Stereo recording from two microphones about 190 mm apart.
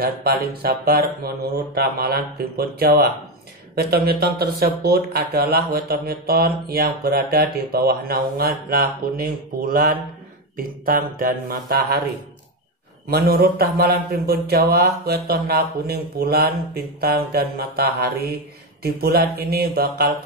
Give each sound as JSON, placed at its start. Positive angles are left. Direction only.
{"t": 0.0, "sound": "speech", "side_deg": -55}
{"t": 13.1, "sound": "speech", "side_deg": -55}